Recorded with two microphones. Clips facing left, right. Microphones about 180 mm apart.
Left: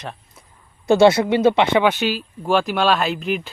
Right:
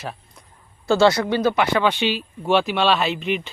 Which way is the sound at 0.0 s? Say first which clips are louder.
Right 1 dB; 5° right (ahead or behind).